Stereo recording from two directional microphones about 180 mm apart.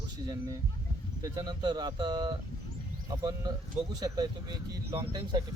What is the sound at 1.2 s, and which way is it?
Speech, 20° right (ahead or behind).